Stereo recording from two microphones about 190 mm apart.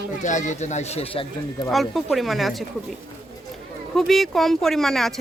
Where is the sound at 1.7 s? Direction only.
Centre (ahead or behind).